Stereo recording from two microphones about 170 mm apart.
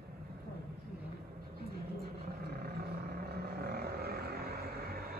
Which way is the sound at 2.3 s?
65° right (ahead or behind).